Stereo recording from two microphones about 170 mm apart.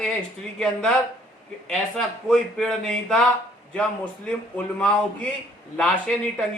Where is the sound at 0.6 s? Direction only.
5° left (ahead or behind).